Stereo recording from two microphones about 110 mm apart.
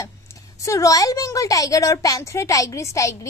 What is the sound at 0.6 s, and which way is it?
A child's voice, 30° left (ahead or behind).